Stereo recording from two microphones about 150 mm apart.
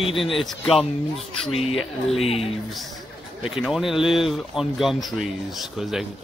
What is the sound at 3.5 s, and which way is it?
Speech, centre (ahead or behind).